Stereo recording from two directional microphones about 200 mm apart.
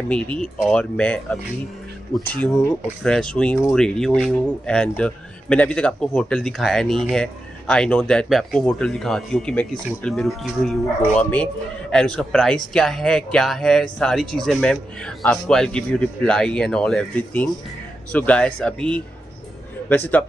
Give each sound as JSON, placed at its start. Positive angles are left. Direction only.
{"t": 0.1, "sound": "a man's voice", "side_deg": 5}
{"t": 2.4, "sound": "a man's voice", "side_deg": 5}